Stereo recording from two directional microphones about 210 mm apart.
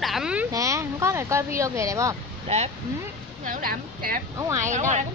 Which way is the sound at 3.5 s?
45° right (ahead or behind).